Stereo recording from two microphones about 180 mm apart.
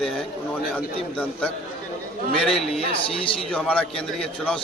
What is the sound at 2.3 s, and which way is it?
A man's voice, centre (ahead or behind).